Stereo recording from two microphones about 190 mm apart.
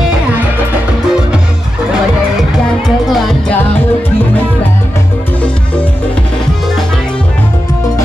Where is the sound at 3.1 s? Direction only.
Centre (ahead or behind).